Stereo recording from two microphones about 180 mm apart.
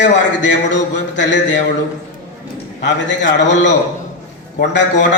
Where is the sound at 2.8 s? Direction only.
80° left.